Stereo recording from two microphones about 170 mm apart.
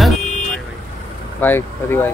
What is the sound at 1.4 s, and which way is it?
Speech, 10° left (ahead or behind).